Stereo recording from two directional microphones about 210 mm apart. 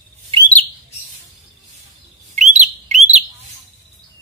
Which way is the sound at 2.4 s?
35° right (ahead or behind).